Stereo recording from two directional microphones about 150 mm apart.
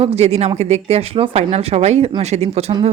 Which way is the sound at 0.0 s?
45° right (ahead or behind).